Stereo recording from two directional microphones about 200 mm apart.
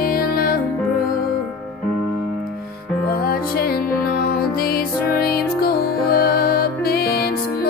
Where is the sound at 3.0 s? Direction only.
50° left (ahead or behind).